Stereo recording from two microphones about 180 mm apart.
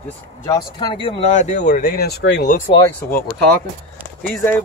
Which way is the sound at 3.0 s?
55° left (ahead or behind).